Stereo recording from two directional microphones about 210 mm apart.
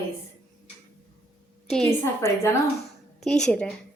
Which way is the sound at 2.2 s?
15° left (ahead or behind).